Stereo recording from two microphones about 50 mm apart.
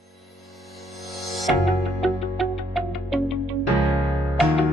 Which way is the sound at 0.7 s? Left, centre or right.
Centre.